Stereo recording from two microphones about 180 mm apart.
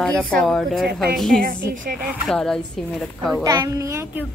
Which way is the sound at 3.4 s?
15° right (ahead or behind).